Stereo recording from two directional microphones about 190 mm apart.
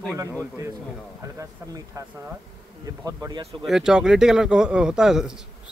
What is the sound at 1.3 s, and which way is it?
Speech, 15° right (ahead or behind).